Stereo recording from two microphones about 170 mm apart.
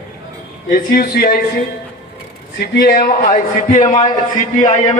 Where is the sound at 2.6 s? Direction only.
65° left (ahead or behind); by 3.9 s 50° left (ahead or behind).